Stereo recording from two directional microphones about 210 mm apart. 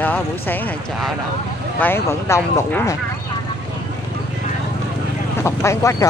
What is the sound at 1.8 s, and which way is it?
Speech, 10° left (ahead or behind).